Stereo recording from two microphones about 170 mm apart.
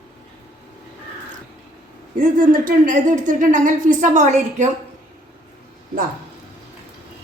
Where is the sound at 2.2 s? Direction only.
55° right (ahead or behind).